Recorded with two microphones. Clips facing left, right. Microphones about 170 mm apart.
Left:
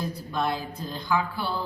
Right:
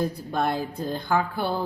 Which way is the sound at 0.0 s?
50° right (ahead or behind).